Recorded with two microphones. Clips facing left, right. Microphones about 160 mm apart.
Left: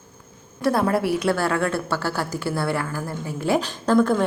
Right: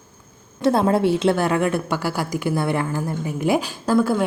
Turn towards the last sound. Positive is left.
turn(degrees=-10)  # may be behind; listen again after turning